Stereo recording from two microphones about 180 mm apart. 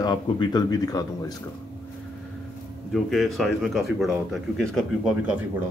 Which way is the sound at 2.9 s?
Centre (ahead or behind).